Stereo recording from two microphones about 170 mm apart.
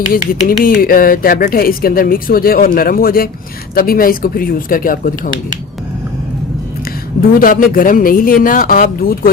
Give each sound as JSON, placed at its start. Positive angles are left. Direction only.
{"t": 0.6, "sound": "speech", "side_deg": 55}
{"t": 7.2, "sound": "speech", "side_deg": 55}